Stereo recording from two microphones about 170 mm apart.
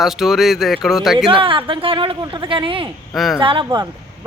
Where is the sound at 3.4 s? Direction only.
30° right (ahead or behind).